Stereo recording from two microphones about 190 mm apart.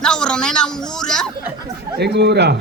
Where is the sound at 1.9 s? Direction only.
60° right (ahead or behind).